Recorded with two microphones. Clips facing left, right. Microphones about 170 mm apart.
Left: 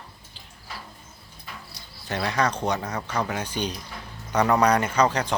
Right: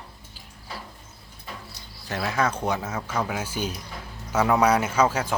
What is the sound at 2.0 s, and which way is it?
Speech, centre (ahead or behind).